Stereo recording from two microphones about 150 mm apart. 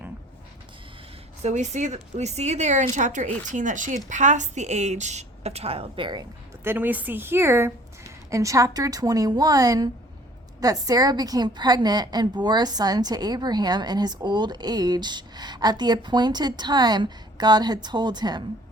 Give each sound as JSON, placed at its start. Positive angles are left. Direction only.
{"t": 1.4, "sound": "speech", "side_deg": -50}
{"t": 6.7, "sound": "a woman's voice", "side_deg": -10}